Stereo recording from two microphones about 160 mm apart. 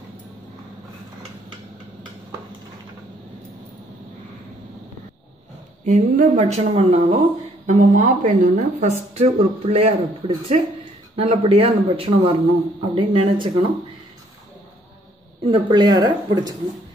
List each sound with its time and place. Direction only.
5.9 s speech: 50° right (ahead or behind)
7.6 s speech: 50° right (ahead or behind); by 13.7 s 35° right (ahead or behind)
15.4 s speech: 30° right (ahead or behind)